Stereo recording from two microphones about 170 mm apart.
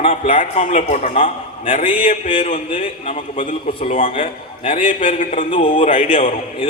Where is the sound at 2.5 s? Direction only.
50° left (ahead or behind).